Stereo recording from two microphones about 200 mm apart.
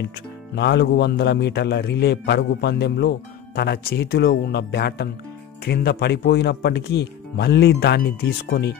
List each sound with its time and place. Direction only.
0.6 s a man's voice: 60° left (ahead or behind)